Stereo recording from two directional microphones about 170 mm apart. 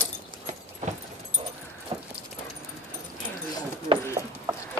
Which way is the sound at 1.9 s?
30° right (ahead or behind).